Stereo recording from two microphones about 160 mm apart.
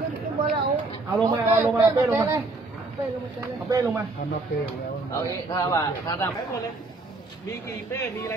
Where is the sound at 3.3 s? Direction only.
15° right (ahead or behind).